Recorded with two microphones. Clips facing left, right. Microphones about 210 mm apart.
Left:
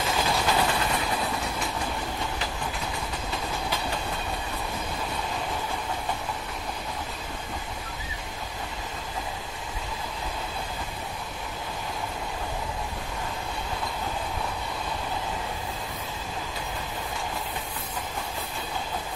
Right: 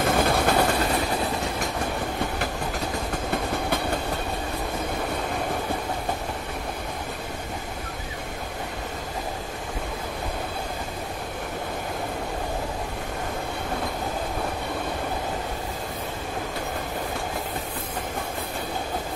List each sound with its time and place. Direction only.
0.0 s train: 55° right (ahead or behind); by 1.0 s 40° right (ahead or behind)